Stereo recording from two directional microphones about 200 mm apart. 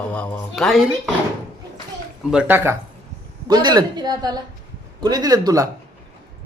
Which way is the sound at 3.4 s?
20° right (ahead or behind).